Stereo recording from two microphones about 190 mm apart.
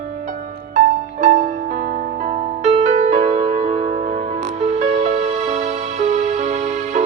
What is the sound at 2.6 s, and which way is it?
Music, 35° right (ahead or behind).